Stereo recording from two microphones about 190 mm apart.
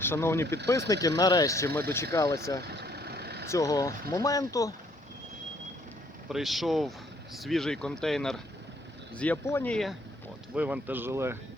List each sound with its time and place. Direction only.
0.0 s speech: 10° left (ahead or behind)
2.6 s vehicle: 60° right (ahead or behind)
3.4 s speech: 15° left (ahead or behind)
6.2 s speech: centre (ahead or behind)
10.5 s speech: 10° right (ahead or behind)